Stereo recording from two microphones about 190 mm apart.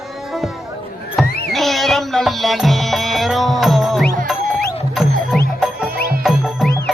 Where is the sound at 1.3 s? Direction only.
55° left (ahead or behind).